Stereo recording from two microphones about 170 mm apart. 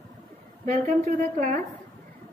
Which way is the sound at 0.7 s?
45° right (ahead or behind).